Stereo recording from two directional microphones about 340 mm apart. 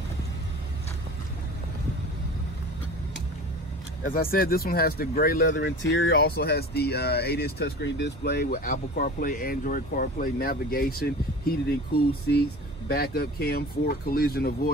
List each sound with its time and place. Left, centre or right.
4.0 s speech: left